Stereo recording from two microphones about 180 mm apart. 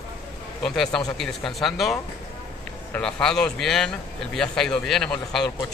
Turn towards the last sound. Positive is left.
turn(degrees=5)  # may be behind; listen again after turning